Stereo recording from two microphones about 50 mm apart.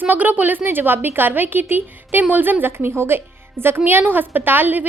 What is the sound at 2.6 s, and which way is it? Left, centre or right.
A woman's voice, right.